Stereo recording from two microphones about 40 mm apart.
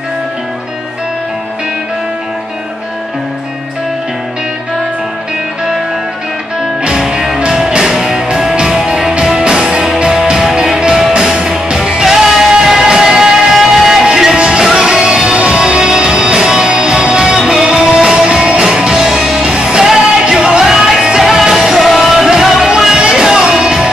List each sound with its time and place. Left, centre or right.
7.0 s music: centre
14.3 s music: right